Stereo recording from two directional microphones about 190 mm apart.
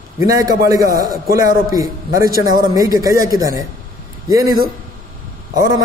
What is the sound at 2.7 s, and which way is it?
Speech, 20° right (ahead or behind).